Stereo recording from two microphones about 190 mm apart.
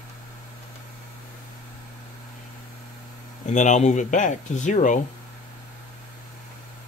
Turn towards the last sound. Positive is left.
turn(degrees=40)  # may be behind; listen again after turning